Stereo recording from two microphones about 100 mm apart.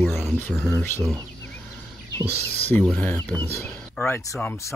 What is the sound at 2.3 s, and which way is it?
Speech, 20° left (ahead or behind).